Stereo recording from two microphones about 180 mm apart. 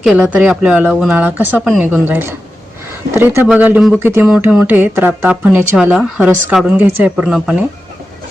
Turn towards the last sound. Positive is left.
turn(degrees=-5)  # may be behind; listen again after turning